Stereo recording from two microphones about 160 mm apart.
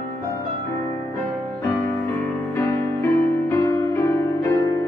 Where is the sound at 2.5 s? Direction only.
15° left (ahead or behind).